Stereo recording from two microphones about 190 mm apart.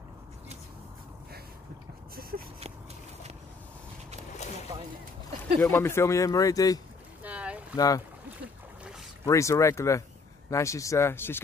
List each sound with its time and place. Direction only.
5.6 s speech: 10° left (ahead or behind)
7.2 s boat: 5° right (ahead or behind)
7.7 s speech: 20° left (ahead or behind)
9.2 s speech: 15° left (ahead or behind)